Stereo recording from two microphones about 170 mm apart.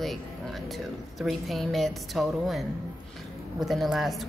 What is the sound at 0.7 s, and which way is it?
A woman's voice, centre (ahead or behind).